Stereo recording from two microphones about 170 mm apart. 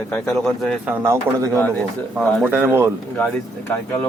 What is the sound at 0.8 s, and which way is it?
Speech, 10° right (ahead or behind).